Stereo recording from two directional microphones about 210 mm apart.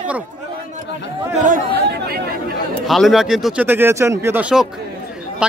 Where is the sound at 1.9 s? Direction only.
50° right (ahead or behind).